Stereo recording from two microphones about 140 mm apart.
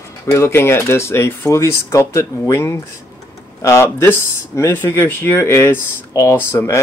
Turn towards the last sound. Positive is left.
turn(degrees=20)  # may be behind; listen again after turning